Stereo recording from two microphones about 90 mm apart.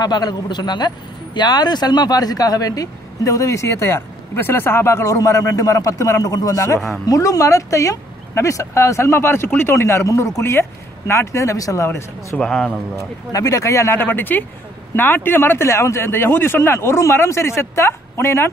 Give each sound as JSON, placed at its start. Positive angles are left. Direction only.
{"t": 0.0, "sound": "speech", "side_deg": 50}
{"t": 12.4, "sound": "speech", "side_deg": 5}
{"t": 13.3, "sound": "speech", "side_deg": 40}